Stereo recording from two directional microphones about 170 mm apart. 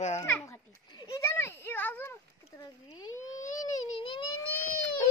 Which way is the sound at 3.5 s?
25° left (ahead or behind).